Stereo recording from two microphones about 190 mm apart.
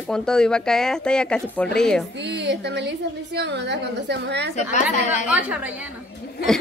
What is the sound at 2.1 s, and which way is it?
A woman's voice, 65° right (ahead or behind).